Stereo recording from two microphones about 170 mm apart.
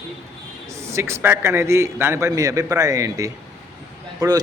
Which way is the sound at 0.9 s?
15° right (ahead or behind).